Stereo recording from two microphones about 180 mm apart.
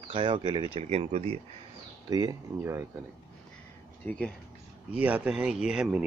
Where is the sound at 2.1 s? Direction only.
20° right (ahead or behind).